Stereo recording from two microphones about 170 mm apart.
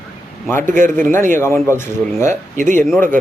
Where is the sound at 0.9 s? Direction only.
15° left (ahead or behind).